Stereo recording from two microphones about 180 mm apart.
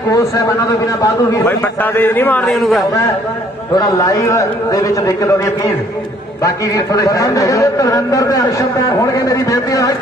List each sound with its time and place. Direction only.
0.1 s a man's voice: 20° left (ahead or behind); by 2.8 s centre (ahead or behind)
3.7 s a man's voice: 20° left (ahead or behind)